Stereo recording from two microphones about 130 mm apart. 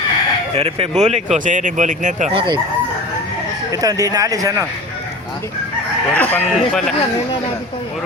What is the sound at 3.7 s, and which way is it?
Speech, 30° right (ahead or behind).